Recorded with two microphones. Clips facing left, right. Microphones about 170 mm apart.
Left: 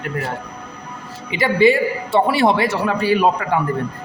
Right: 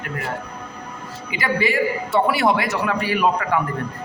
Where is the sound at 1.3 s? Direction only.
25° left (ahead or behind).